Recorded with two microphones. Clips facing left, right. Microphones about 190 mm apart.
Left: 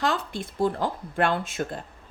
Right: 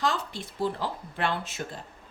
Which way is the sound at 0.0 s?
55° left (ahead or behind).